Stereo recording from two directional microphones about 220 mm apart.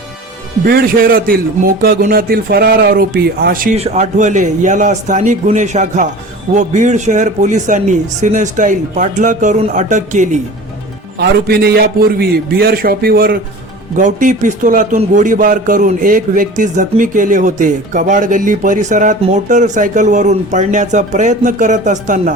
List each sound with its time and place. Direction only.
0.6 s a man's voice: 40° right (ahead or behind)
3.8 s speech: 30° right (ahead or behind)
11.2 s a man's voice: 45° right (ahead or behind)